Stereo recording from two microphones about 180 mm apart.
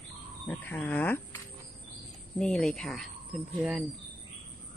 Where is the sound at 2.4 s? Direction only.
5° left (ahead or behind).